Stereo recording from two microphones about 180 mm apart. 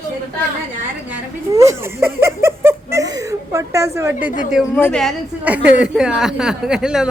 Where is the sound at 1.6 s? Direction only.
15° right (ahead or behind).